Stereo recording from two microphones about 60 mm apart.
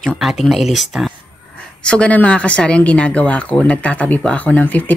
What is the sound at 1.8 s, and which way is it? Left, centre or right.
Speech, centre.